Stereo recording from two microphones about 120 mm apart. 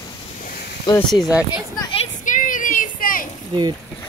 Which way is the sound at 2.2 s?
90° left.